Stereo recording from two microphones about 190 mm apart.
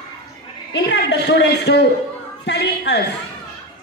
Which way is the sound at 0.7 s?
60° left (ahead or behind).